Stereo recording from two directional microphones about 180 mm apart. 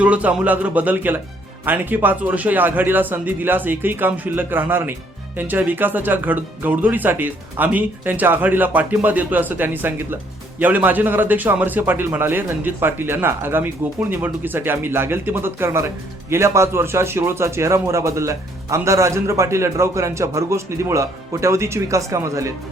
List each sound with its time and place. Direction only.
0.0 s speech: 5° right (ahead or behind)